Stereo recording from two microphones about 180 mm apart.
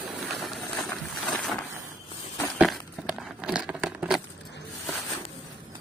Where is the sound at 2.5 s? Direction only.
Centre (ahead or behind).